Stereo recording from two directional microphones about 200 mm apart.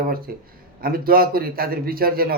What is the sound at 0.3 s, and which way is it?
Speech, 50° right (ahead or behind).